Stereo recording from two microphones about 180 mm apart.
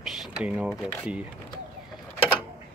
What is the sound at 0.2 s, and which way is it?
Speech, 5° right (ahead or behind).